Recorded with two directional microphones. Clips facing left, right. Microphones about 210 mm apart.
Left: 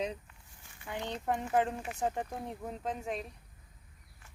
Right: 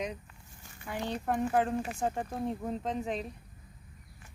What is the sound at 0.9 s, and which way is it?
Speech, 20° left (ahead or behind).